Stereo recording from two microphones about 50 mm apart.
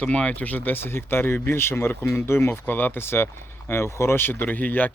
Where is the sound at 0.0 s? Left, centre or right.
Left.